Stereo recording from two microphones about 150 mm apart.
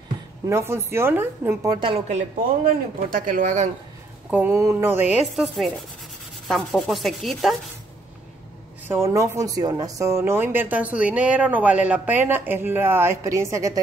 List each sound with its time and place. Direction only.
0.5 s speech: 20° right (ahead or behind)
1.8 s speech: 40° right (ahead or behind)
2.6 s speech: 70° right (ahead or behind); by 3.7 s 50° right (ahead or behind)
4.3 s speech: 15° right (ahead or behind)
5.3 s speech: centre (ahead or behind)
8.8 s speech: 20° right (ahead or behind)